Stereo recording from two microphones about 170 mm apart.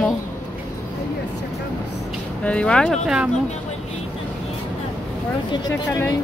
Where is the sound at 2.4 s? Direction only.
5° left (ahead or behind).